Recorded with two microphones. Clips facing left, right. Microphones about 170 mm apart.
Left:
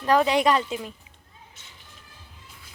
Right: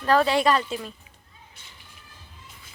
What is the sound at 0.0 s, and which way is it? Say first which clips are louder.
Speech: even; 15° left (ahead or behind).